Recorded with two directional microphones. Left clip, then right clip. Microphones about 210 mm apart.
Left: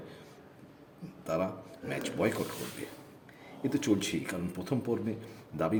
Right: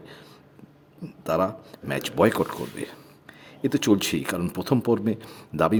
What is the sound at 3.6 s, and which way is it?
Speech, 30° right (ahead or behind).